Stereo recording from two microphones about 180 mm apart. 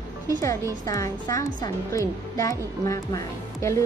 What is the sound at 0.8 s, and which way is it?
Speech, 20° left (ahead or behind).